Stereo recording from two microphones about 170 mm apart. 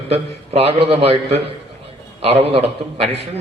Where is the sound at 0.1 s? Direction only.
35° right (ahead or behind).